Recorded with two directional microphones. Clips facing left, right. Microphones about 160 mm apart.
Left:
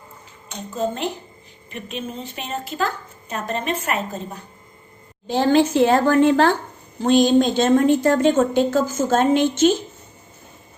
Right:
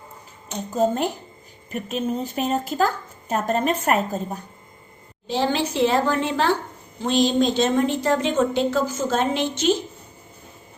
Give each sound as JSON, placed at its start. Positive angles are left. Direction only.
{"t": 0.7, "sound": "a woman's voice", "side_deg": -40}
{"t": 5.3, "sound": "a woman's voice", "side_deg": 50}